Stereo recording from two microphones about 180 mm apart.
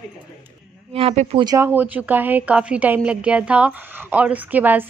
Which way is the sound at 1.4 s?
15° right (ahead or behind).